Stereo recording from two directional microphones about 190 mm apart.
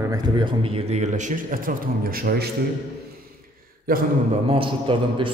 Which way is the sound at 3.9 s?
50° right (ahead or behind).